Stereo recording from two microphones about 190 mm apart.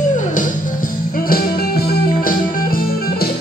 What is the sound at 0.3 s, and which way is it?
Music, 45° left (ahead or behind).